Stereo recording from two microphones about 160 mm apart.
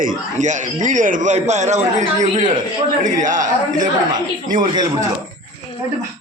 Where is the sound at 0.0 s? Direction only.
55° right (ahead or behind).